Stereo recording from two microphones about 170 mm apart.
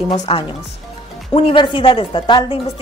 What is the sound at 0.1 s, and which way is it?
A woman's voice, 30° left (ahead or behind).